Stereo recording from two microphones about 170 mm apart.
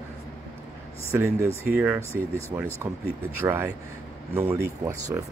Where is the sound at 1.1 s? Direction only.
15° right (ahead or behind).